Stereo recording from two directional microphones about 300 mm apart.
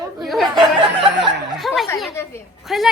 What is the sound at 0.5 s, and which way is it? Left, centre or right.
Speech, centre.